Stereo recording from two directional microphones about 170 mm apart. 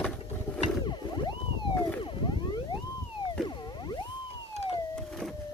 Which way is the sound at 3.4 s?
25° left (ahead or behind).